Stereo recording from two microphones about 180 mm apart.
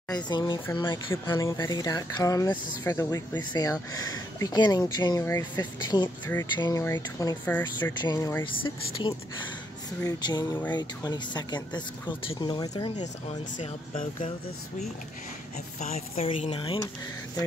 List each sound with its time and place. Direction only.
0.1 s speech: 25° left (ahead or behind)
8.0 s speech: 20° left (ahead or behind)
8.6 s speech: 30° left (ahead or behind)
15.8 s speech: 35° left (ahead or behind)